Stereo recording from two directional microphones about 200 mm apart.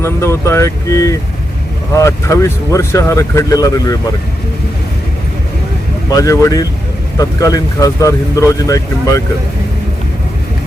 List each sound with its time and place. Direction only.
0.0 s speech: 15° left (ahead or behind)
6.1 s speech: 15° left (ahead or behind)